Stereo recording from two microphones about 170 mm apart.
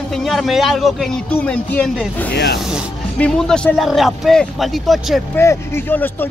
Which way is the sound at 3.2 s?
5° left (ahead or behind).